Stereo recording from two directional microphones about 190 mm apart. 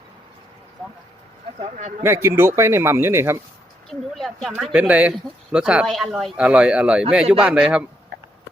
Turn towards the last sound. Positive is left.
turn(degrees=-5)  # may be behind; listen again after turning